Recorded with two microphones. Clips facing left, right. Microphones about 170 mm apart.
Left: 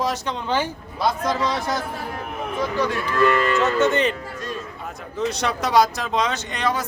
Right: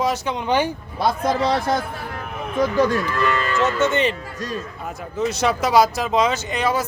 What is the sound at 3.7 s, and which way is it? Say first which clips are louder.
Speech: even; centre (ahead or behind).